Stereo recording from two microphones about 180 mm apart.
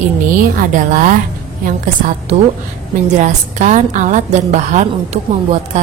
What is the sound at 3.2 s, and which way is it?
A woman's voice, 40° right (ahead or behind).